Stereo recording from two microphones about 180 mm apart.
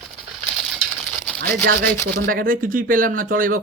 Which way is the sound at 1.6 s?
55° right (ahead or behind).